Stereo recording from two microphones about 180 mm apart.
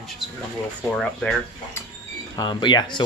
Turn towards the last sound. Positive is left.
turn(degrees=25)  # may be behind; listen again after turning